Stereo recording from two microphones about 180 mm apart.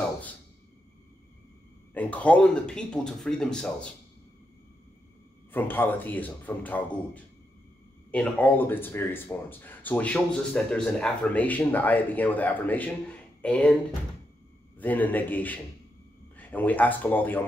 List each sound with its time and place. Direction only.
2.0 s speech: 10° left (ahead or behind)
5.5 s speech: 10° left (ahead or behind)
8.1 s speech: 10° left (ahead or behind)
14.8 s speech: 10° left (ahead or behind)